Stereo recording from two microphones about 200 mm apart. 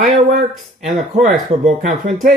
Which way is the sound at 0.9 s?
40° right (ahead or behind).